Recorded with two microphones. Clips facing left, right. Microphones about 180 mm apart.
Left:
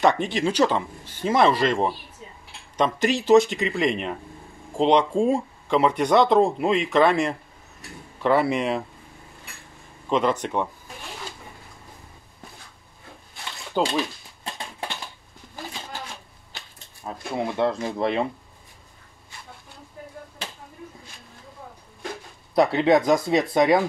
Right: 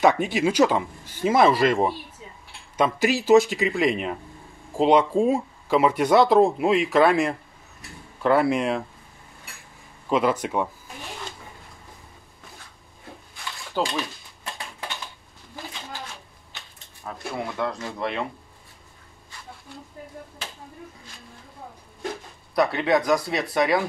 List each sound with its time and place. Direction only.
0.0 s speech: 5° right (ahead or behind)
10.0 s speech: 5° right (ahead or behind)
13.8 s speech: 15° left (ahead or behind)
17.0 s speech: 25° left (ahead or behind)
22.6 s speech: 25° left (ahead or behind)